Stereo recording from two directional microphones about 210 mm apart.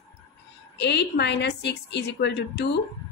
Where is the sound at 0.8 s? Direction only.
55° left (ahead or behind).